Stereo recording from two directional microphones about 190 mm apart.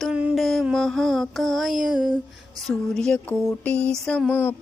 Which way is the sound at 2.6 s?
Centre (ahead or behind).